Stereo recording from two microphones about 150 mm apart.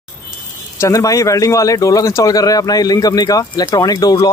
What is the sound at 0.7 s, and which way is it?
Speech, 20° left (ahead or behind).